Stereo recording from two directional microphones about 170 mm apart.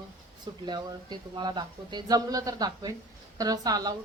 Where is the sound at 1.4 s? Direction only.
25° right (ahead or behind).